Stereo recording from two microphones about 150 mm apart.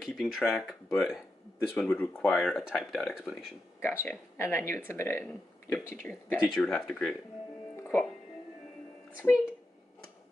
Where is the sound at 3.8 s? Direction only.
15° left (ahead or behind).